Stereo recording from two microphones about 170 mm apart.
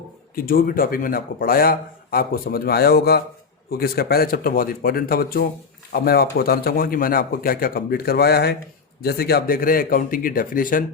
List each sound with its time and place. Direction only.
0.3 s speech: 60° left (ahead or behind)